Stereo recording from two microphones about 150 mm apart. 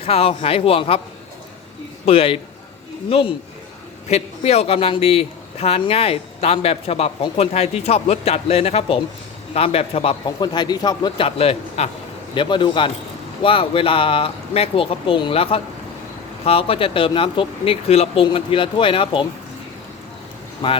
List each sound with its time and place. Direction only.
0.0 s a man's voice: 40° left (ahead or behind)
2.0 s a man's voice: 40° left (ahead or behind)